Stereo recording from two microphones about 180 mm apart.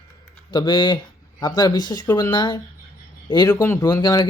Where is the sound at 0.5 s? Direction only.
25° left (ahead or behind).